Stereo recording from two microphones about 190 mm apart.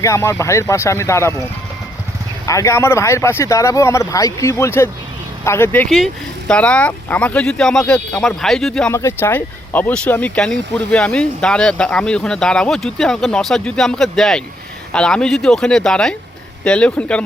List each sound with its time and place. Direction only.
0.0 s speech: 15° left (ahead or behind)
2.5 s speech: 15° left (ahead or behind)
8.9 s speech: 15° left (ahead or behind)